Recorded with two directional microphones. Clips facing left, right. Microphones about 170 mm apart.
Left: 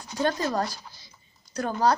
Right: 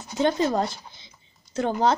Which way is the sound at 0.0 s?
20° right (ahead or behind).